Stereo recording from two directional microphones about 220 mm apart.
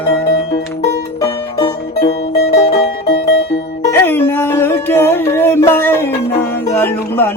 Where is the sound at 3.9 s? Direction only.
10° left (ahead or behind).